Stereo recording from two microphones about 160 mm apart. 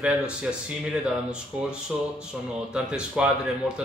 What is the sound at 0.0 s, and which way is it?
Speech, 5° right (ahead or behind).